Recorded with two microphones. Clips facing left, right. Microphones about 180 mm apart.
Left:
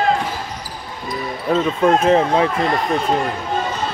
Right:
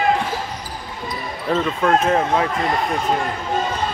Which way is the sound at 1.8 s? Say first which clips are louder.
Left 4 dB; 20° left (ahead or behind).